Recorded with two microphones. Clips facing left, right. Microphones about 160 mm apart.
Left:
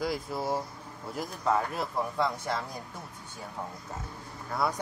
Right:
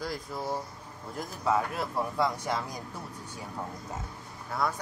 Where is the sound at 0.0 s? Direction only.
10° left (ahead or behind); by 2.6 s 10° right (ahead or behind).